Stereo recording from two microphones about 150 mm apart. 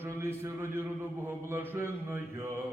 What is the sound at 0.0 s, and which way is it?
A man's voice, 15° right (ahead or behind).